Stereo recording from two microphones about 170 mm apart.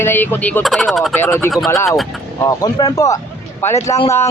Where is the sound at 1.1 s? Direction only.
15° left (ahead or behind).